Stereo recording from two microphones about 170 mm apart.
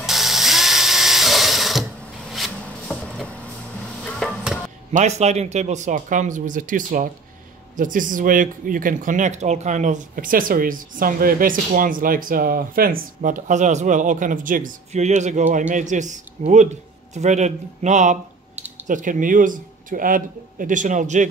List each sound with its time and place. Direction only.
0.0 s drill: centre (ahead or behind)
2.3 s rub: centre (ahead or behind)
4.0 s a sound: 5° left (ahead or behind)
4.9 s speech: 40° right (ahead or behind)